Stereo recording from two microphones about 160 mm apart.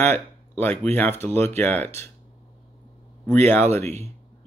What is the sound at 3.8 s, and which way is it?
Speech, 40° right (ahead or behind).